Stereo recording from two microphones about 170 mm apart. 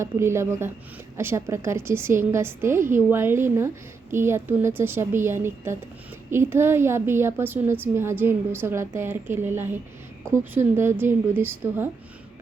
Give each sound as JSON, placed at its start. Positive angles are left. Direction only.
{"t": 0.0, "sound": "a woman's voice", "side_deg": -15}